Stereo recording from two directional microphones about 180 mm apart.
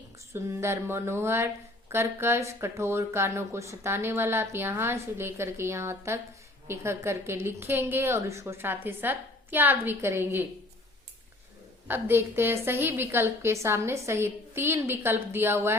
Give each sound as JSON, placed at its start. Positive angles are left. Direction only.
{"t": 0.3, "sound": "speech", "side_deg": -15}
{"t": 11.9, "sound": "speech", "side_deg": -10}